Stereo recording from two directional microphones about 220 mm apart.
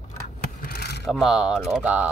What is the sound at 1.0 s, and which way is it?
Speech, centre (ahead or behind).